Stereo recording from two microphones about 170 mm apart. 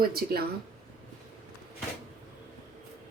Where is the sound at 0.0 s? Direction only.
65° right (ahead or behind).